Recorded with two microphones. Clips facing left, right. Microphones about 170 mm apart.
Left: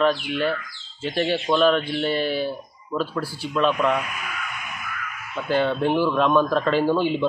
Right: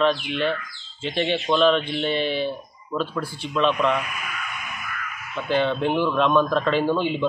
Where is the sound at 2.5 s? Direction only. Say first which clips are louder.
Even; 5° left (ahead or behind).